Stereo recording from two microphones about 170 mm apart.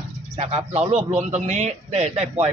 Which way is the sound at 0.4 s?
40° right (ahead or behind).